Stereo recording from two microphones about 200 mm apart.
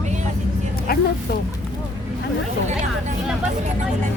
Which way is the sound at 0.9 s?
50° left (ahead or behind).